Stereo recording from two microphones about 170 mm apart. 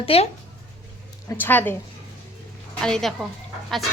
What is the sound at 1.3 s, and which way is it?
Speech, 10° left (ahead or behind).